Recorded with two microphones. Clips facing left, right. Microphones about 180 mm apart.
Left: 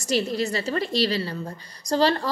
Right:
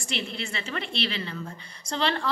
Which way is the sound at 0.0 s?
40° left (ahead or behind).